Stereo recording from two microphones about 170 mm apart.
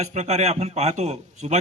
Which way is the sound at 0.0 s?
40° right (ahead or behind).